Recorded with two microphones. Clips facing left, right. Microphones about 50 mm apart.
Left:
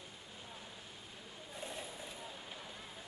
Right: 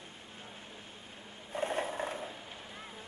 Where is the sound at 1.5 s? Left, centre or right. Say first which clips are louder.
Right 13 dB; right.